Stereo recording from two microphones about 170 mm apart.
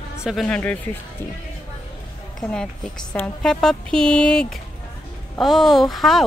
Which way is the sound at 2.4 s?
5° left (ahead or behind).